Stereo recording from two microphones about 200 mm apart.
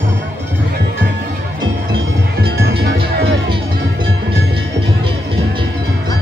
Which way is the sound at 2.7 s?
50° right (ahead or behind).